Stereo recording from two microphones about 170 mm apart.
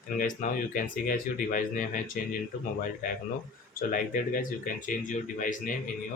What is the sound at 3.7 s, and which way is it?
Speech, 55° left (ahead or behind).